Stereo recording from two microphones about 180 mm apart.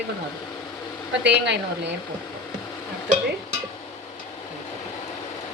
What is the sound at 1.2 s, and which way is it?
Speech, 75° right (ahead or behind).